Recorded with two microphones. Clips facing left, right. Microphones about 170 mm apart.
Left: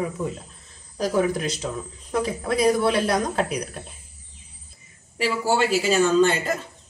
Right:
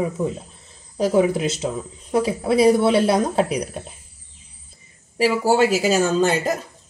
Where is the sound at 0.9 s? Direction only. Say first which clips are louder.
Right 4 dB; 25° right (ahead or behind).